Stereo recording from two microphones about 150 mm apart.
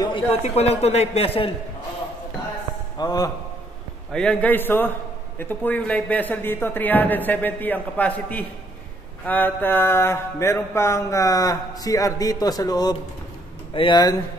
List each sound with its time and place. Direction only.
0.0 s a man's voice: 40° left (ahead or behind)
3.0 s mantra: 25° left (ahead or behind)
4.1 s a man's voice: 5° left (ahead or behind)
9.2 s mantra: 10° left (ahead or behind)
13.7 s speech: 30° left (ahead or behind)